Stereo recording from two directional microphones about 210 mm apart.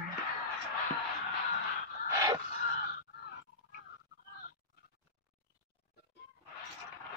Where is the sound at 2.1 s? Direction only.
15° right (ahead or behind).